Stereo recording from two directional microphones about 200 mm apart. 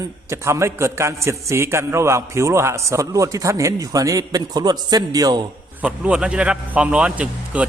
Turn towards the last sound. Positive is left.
turn(degrees=-5)  # may be behind; listen again after turning